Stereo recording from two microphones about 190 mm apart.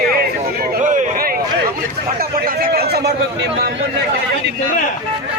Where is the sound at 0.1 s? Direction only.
50° right (ahead or behind).